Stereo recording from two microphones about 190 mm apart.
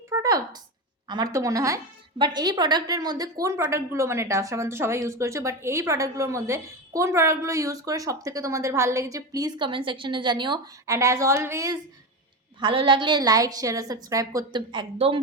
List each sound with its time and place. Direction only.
0.1 s a sound: 20° right (ahead or behind)
1.0 s a woman's voice: 20° right (ahead or behind)
12.5 s a woman's voice: 25° right (ahead or behind)